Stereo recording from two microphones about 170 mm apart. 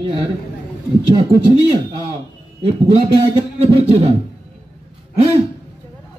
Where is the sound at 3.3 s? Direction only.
35° right (ahead or behind).